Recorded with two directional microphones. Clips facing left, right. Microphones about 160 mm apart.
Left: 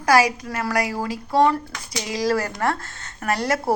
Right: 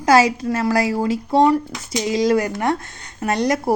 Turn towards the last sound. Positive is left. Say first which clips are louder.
# right 3 dB
turn(degrees=-20)  # may be behind; listen again after turning